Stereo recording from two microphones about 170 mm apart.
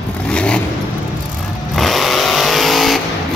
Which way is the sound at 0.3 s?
5° left (ahead or behind).